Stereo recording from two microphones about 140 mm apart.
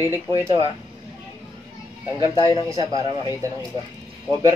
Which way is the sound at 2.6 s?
25° right (ahead or behind).